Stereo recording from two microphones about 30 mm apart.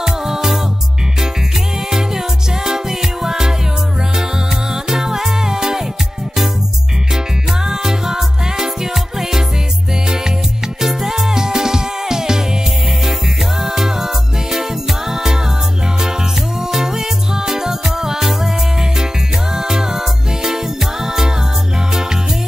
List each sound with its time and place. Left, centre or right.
0.0 s music: centre
1.9 s music: centre
4.8 s music: centre
7.6 s music: right
10.8 s music: centre
13.6 s music: centre
16.7 s music: centre
19.5 s music: centre